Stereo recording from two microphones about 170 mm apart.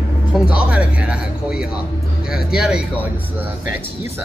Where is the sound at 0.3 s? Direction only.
5° right (ahead or behind).